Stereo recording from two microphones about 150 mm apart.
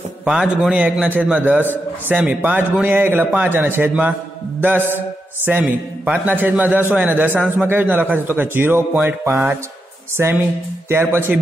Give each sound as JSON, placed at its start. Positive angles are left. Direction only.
{"t": 0.2, "sound": "a man's voice", "side_deg": -5}
{"t": 4.6, "sound": "mantra", "side_deg": -15}
{"t": 4.9, "sound": "a man's voice", "side_deg": -15}